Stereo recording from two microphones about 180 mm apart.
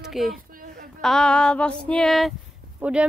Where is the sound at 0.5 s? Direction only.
50° right (ahead or behind).